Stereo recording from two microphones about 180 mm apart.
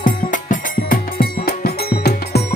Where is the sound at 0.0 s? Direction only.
45° left (ahead or behind).